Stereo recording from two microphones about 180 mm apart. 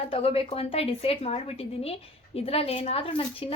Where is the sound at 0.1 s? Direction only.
30° left (ahead or behind).